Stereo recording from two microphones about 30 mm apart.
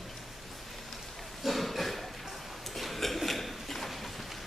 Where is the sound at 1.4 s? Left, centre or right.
Centre.